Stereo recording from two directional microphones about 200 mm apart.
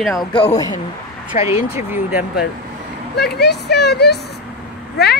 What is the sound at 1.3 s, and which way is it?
Speech, 35° left (ahead or behind).